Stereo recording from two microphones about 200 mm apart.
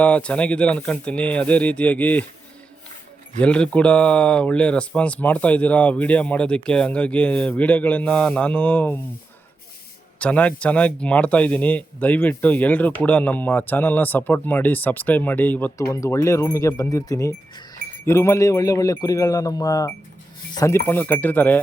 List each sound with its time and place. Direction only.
0.0 s speech: 5° left (ahead or behind)
3.3 s speech: 5° left (ahead or behind)
10.2 s speech: 5° left (ahead or behind)